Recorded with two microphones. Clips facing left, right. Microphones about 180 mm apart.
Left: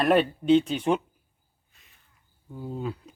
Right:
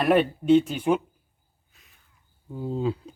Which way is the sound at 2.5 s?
25° right (ahead or behind).